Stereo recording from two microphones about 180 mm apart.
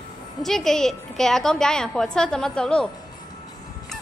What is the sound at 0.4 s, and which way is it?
A woman's voice, centre (ahead or behind).